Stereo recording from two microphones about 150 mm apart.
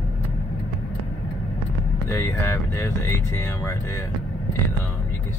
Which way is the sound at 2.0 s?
15° left (ahead or behind).